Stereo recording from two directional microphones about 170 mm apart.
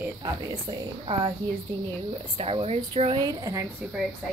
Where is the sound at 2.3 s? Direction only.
35° right (ahead or behind).